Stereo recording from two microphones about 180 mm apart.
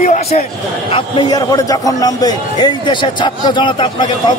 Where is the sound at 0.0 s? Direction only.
45° left (ahead or behind).